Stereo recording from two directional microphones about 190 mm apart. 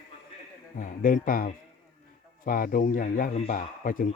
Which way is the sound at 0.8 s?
45° left (ahead or behind).